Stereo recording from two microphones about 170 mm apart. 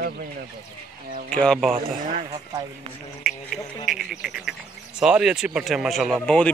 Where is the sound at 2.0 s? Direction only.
50° right (ahead or behind).